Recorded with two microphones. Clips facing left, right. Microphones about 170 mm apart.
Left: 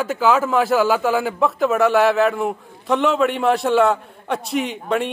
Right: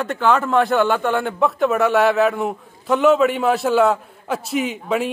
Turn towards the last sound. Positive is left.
turn(degrees=-5)  # may be behind; listen again after turning